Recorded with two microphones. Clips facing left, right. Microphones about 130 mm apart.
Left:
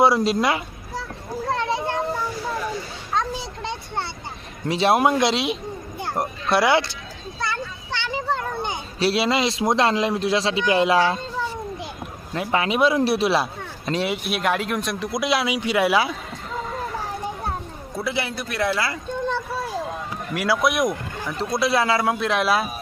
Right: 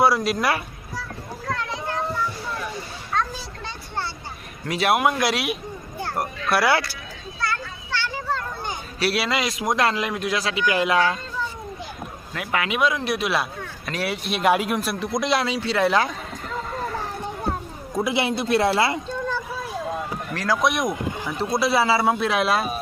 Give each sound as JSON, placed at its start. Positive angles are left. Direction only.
{"t": 0.0, "sound": "speech", "side_deg": 25}
{"t": 1.5, "sound": "children playing", "side_deg": 25}
{"t": 4.7, "sound": "a man's voice", "side_deg": 30}
{"t": 7.4, "sound": "a sound", "side_deg": 20}
{"t": 12.3, "sound": "a man's voice", "side_deg": 30}
{"t": 14.4, "sound": "speech", "side_deg": -10}
{"t": 15.5, "sound": "speech", "side_deg": 15}
{"t": 16.7, "sound": "vehicle", "side_deg": 0}
{"t": 17.9, "sound": "a man's voice", "side_deg": -20}
{"t": 19.0, "sound": "a sound", "side_deg": 25}
{"t": 20.3, "sound": "speech", "side_deg": 10}
{"t": 20.9, "sound": "a sound", "side_deg": -15}
{"t": 21.6, "sound": "speech", "side_deg": 0}